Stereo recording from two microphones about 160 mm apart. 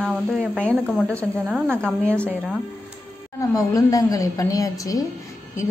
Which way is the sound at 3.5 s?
20° left (ahead or behind).